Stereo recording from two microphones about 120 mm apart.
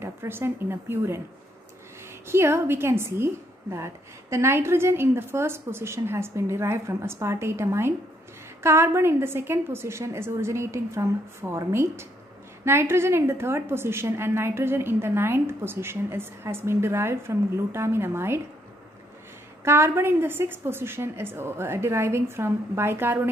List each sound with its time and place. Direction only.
0.0 s a woman's voice: 20° right (ahead or behind)
2.2 s a woman's voice: 20° right (ahead or behind)
19.6 s a woman's voice: 20° right (ahead or behind)